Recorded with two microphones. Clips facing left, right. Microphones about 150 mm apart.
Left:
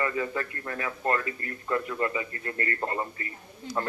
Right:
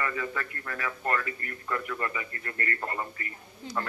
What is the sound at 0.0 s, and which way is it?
Speech, 25° left (ahead or behind).